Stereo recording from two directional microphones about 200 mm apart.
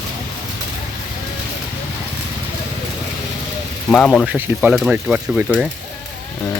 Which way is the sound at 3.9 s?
5° left (ahead or behind).